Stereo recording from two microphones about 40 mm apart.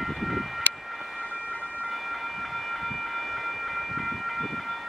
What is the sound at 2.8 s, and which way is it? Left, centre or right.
Train, centre.